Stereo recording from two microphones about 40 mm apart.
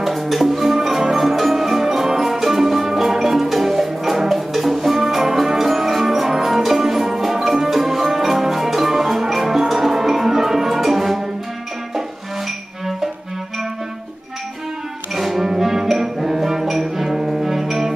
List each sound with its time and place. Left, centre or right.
0.0 s music: centre
15.1 s music: centre